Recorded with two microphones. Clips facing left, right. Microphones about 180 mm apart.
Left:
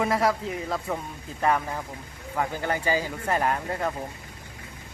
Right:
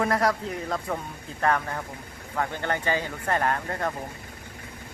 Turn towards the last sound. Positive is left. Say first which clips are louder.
# left 1 dB
turn(degrees=10)  # may be behind; listen again after turning